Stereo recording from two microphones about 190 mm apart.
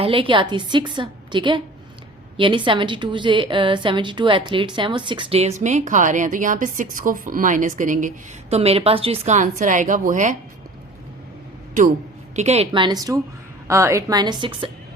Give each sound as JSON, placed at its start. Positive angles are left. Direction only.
{"t": 0.0, "sound": "a woman's voice", "side_deg": -30}
{"t": 12.4, "sound": "a woman's voice", "side_deg": -35}